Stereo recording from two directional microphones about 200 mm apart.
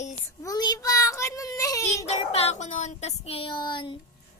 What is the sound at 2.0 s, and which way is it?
Child singing, 30° left (ahead or behind).